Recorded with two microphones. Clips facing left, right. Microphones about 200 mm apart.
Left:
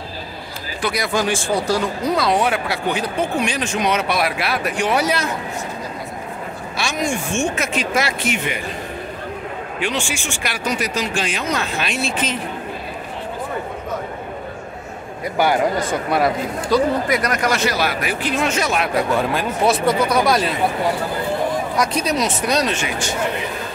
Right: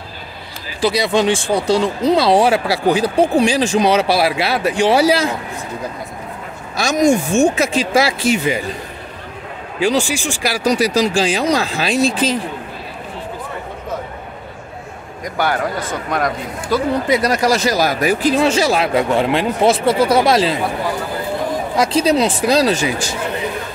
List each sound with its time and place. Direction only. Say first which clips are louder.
0.8 s speech: right 6 dB; 25° right (ahead or behind)
6.8 s speech: right 9 dB; 40° right (ahead or behind)
9.8 s speech: right 9 dB; 35° right (ahead or behind)
15.2 s a man's voice: left 2 dB; 10° left (ahead or behind)
16.7 s speech: left 1 dB; 5° right (ahead or behind)
17.1 s speech: right 4 dB; 30° right (ahead or behind)
21.7 s speech: right 9 dB; 30° right (ahead or behind)